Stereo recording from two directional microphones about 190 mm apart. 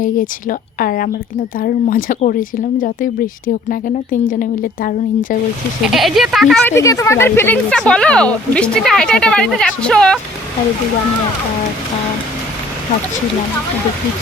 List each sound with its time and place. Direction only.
0.0 s speech: 45° left (ahead or behind)
5.9 s speech: centre (ahead or behind)
6.7 s speech: 15° left (ahead or behind)